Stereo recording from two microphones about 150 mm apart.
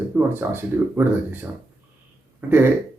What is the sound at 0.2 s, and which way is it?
Speech, 15° right (ahead or behind).